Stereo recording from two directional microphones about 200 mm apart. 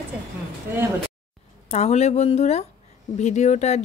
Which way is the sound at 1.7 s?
35° left (ahead or behind).